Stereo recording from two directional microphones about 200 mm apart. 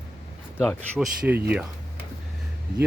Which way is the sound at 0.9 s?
5° right (ahead or behind).